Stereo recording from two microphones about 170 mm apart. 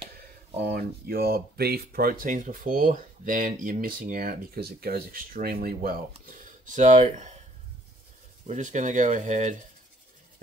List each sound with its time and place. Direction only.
0.6 s speech: 65° right (ahead or behind); by 7.3 s 45° right (ahead or behind)
8.5 s speech: 45° right (ahead or behind)